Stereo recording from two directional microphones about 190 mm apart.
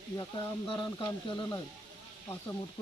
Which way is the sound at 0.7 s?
25° left (ahead or behind).